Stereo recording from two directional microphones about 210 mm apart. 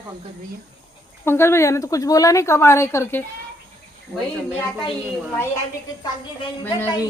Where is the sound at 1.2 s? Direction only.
10° left (ahead or behind).